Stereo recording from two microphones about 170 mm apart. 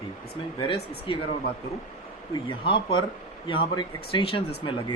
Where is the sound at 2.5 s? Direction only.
30° left (ahead or behind).